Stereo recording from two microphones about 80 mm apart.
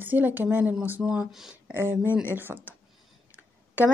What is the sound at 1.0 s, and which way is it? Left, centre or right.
Speech, centre.